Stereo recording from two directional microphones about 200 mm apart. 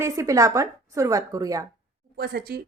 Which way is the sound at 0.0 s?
15° right (ahead or behind).